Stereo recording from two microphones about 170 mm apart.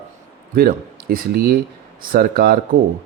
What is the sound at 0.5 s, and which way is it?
Speech, 60° right (ahead or behind).